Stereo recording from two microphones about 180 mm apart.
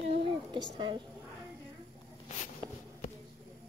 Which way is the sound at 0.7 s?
30° right (ahead or behind).